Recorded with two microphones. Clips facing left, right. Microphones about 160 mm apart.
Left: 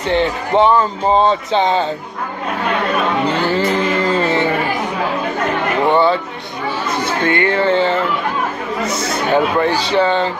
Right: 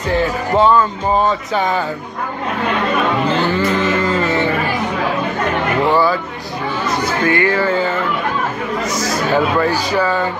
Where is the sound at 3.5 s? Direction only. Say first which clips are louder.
Even; 30° left (ahead or behind).